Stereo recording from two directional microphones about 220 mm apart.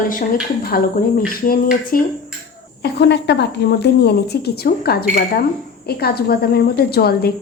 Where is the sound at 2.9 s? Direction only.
50° left (ahead or behind).